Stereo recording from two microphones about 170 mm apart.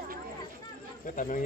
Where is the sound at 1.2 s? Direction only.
55° left (ahead or behind).